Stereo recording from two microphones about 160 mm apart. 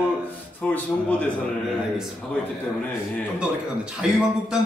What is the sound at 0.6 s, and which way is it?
Speech, 5° left (ahead or behind).